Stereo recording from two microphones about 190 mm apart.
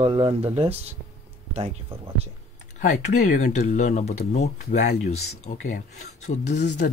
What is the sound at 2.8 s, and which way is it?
Speech, 40° left (ahead or behind).